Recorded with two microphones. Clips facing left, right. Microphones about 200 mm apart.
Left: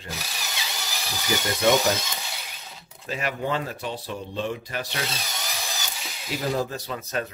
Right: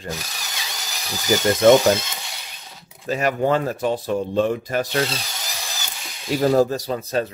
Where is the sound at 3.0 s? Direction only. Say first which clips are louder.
Right 8 dB; 45° right (ahead or behind).